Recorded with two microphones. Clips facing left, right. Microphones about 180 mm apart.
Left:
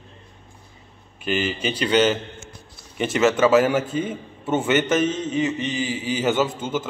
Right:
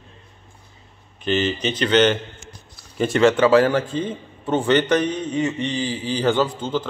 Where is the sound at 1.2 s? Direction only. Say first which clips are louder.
Right 3 dB; 10° left (ahead or behind).